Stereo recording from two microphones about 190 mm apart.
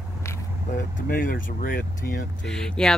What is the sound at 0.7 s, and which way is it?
Speech, 45° left (ahead or behind).